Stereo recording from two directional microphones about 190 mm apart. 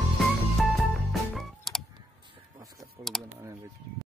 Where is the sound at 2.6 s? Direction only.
20° right (ahead or behind).